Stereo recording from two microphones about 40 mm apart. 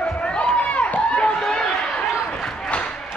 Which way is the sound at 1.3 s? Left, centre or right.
Centre.